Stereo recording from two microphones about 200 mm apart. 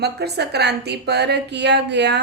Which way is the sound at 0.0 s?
55° right (ahead or behind).